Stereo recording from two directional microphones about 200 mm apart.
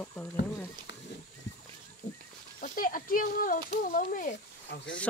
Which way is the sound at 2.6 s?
45° left (ahead or behind).